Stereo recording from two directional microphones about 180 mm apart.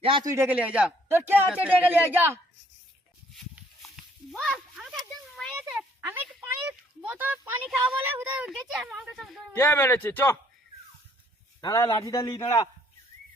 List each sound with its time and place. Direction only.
0.0 s speech: 25° right (ahead or behind)
0.3 s speech: 10° right (ahead or behind)
3.3 s a sound: centre (ahead or behind)
5.5 s speech: 5° right (ahead or behind)
9.6 s speech: 10° left (ahead or behind)
11.6 s a man's voice: 20° left (ahead or behind)